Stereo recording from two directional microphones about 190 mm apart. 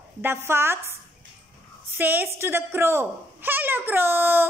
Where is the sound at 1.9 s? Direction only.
10° right (ahead or behind).